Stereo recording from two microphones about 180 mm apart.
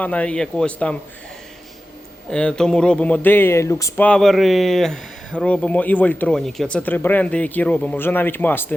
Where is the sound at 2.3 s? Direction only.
5° left (ahead or behind).